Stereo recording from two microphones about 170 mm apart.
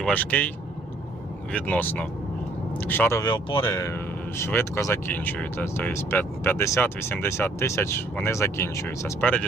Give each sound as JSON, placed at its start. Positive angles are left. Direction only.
{"t": 0.0, "sound": "speech", "side_deg": 10}
{"t": 1.5, "sound": "speech", "side_deg": 10}